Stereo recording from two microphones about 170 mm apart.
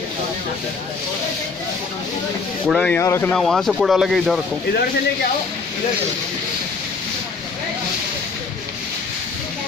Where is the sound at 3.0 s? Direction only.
15° left (ahead or behind).